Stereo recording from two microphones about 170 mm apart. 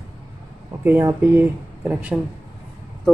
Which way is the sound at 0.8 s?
15° right (ahead or behind).